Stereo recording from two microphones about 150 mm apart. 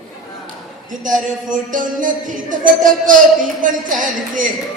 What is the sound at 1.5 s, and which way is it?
Music, 60° right (ahead or behind).